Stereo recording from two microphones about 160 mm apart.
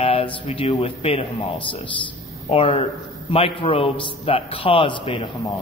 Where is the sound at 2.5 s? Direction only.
35° left (ahead or behind).